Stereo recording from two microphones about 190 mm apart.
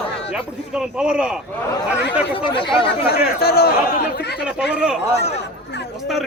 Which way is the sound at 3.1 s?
55° left (ahead or behind).